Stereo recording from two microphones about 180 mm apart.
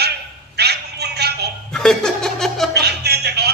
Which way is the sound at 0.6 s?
65° right (ahead or behind).